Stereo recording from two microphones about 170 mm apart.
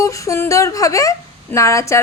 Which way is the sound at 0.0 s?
20° left (ahead or behind).